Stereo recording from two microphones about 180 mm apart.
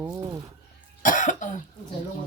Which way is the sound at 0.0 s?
15° right (ahead or behind).